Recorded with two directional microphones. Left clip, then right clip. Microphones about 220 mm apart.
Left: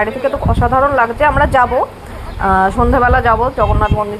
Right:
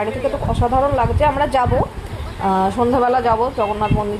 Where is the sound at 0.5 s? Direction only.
15° left (ahead or behind).